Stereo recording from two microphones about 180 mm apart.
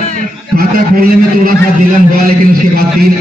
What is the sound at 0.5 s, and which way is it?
A man's voice, 55° right (ahead or behind).